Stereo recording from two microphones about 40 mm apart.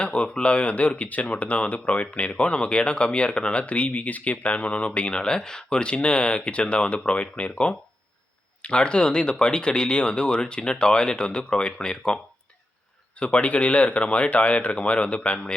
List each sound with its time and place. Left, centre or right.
0.0 s speech: left